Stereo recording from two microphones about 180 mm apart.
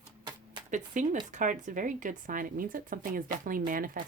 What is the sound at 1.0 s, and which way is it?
Speech, 45° right (ahead or behind).